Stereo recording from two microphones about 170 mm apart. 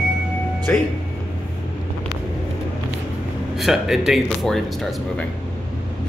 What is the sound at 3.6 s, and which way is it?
Speech, centre (ahead or behind).